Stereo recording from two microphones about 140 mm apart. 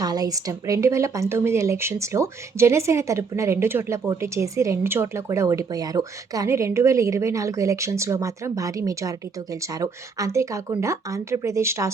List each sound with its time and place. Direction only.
0.0 s speech: 25° right (ahead or behind)